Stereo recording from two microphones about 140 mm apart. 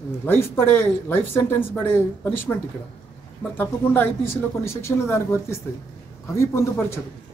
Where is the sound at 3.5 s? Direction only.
15° left (ahead or behind).